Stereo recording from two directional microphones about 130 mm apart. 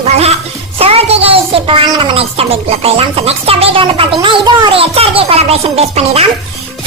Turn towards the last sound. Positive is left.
turn(degrees=-50)  # may be behind; listen again after turning